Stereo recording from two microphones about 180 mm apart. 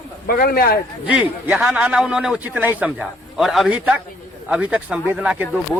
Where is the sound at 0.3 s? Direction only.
55° left (ahead or behind).